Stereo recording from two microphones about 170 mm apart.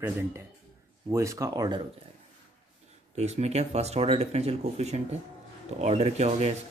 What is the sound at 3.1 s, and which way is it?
Speech, 40° right (ahead or behind).